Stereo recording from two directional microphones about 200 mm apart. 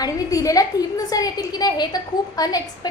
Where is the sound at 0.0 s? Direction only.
15° left (ahead or behind).